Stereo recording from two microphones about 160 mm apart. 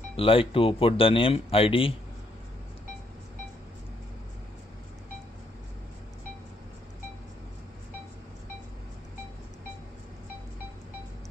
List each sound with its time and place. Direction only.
0.1 s speech: 35° left (ahead or behind)